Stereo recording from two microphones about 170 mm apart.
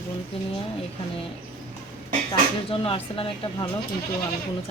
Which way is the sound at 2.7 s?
35° left (ahead or behind).